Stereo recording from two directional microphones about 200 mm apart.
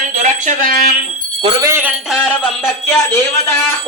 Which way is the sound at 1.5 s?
15° right (ahead or behind).